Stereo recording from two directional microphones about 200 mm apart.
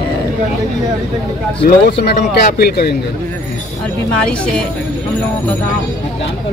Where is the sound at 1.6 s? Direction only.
50° left (ahead or behind).